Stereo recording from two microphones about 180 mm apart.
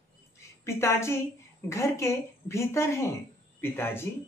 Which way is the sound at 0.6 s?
15° left (ahead or behind).